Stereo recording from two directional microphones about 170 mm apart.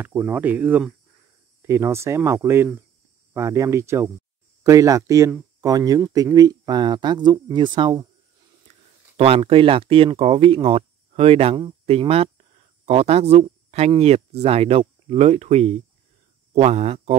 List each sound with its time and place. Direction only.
0.0 s speech: 10° right (ahead or behind); by 17.1 s 35° right (ahead or behind)